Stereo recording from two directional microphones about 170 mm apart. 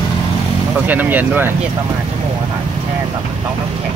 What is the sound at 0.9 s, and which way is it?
Speech, 10° right (ahead or behind).